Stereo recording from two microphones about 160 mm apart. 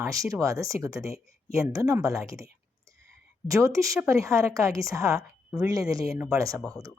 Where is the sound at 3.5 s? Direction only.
20° right (ahead or behind).